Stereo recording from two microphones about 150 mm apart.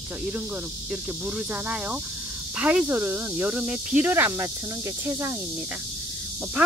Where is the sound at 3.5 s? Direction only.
10° right (ahead or behind).